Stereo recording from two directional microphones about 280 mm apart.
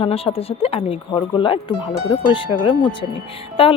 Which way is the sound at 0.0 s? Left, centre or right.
Left.